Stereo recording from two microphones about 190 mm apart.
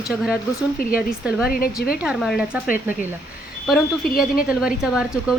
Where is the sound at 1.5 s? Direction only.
50° left (ahead or behind).